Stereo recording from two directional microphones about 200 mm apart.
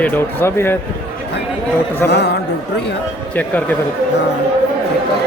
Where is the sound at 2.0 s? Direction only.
55° left (ahead or behind).